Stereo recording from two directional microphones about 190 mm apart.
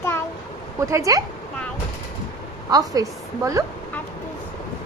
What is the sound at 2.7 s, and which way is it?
Speech, 20° right (ahead or behind).